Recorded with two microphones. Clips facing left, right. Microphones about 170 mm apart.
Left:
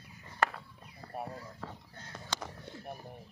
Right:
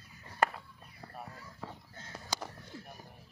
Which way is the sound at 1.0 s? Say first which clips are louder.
Left 6 dB; 5° right (ahead or behind).